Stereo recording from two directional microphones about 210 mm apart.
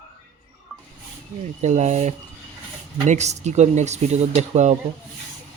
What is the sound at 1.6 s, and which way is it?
Speech, 35° right (ahead or behind).